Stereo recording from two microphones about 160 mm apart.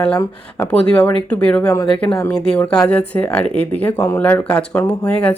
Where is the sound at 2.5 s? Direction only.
5° left (ahead or behind).